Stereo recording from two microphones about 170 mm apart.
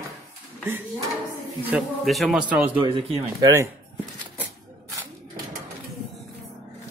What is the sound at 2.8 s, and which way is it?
Speech, 30° right (ahead or behind).